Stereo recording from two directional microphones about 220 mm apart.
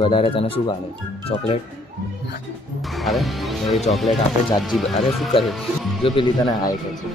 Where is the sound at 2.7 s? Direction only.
Centre (ahead or behind).